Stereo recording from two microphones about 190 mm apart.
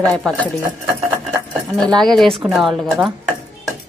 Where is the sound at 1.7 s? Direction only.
Centre (ahead or behind).